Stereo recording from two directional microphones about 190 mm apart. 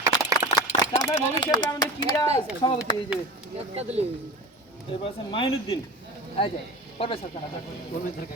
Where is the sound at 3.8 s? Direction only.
35° right (ahead or behind).